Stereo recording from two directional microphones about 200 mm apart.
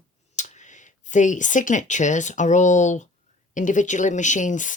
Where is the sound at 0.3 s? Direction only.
35° left (ahead or behind).